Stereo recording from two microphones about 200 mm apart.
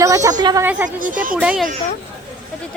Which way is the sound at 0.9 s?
40° right (ahead or behind).